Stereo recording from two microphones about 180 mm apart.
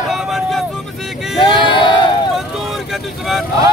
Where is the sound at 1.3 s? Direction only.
25° left (ahead or behind).